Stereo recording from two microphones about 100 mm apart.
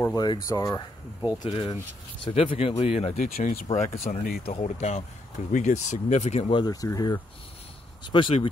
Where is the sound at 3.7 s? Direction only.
30° left (ahead or behind).